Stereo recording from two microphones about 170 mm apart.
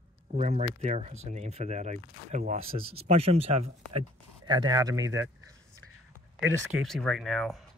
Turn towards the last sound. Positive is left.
turn(degrees=0)  # may be behind; listen again after turning